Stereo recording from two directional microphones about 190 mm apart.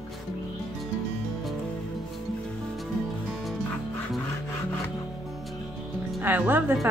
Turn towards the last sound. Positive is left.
turn(degrees=-10)  # may be behind; listen again after turning